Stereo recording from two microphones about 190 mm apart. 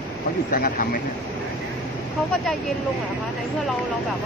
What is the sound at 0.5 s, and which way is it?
Speech, 45° left (ahead or behind).